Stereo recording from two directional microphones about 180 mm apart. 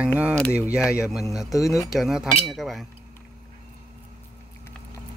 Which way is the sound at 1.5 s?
20° left (ahead or behind).